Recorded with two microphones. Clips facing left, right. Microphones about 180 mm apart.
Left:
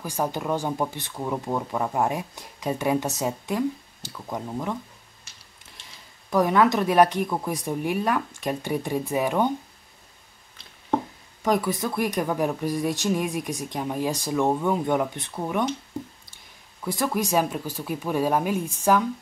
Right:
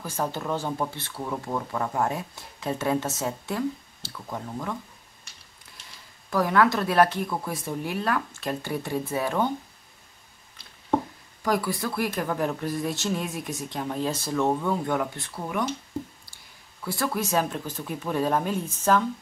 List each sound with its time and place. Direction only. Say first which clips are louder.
0.0 s speech: left 2 dB; 15° left (ahead or behind)
6.3 s speech: left 2 dB; 20° left (ahead or behind)
11.4 s speech: left 2 dB; 20° left (ahead or behind)
16.8 s speech: left 2 dB; 15° left (ahead or behind)